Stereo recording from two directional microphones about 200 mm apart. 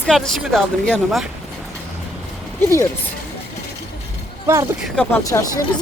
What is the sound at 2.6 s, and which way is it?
Speech, 15° left (ahead or behind).